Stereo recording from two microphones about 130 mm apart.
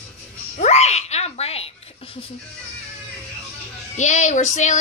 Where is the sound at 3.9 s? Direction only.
65° left (ahead or behind).